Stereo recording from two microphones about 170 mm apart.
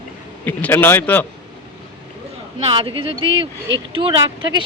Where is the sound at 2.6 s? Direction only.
30° right (ahead or behind).